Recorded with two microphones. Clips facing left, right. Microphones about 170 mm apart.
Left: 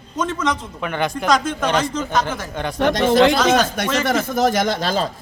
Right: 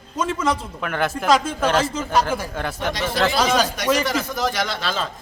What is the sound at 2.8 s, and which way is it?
A man's voice, 50° left (ahead or behind).